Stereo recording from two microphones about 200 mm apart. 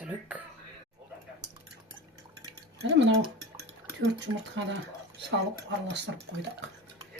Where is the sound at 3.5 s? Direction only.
60° right (ahead or behind).